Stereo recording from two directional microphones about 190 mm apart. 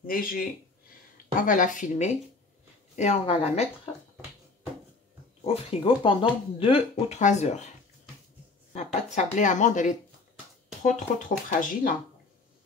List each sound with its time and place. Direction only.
0.0 s speech: 50° left (ahead or behind); by 3.9 s 30° left (ahead or behind)
5.4 s speech: 30° left (ahead or behind)
8.7 s speech: 40° left (ahead or behind)